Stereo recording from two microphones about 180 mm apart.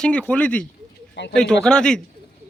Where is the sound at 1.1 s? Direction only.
70° left (ahead or behind).